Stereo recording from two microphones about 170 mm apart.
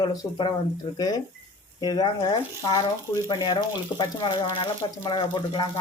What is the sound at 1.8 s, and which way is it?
Speech, 25° left (ahead or behind).